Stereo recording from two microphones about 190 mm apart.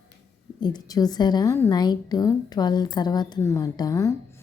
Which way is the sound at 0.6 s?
20° left (ahead or behind).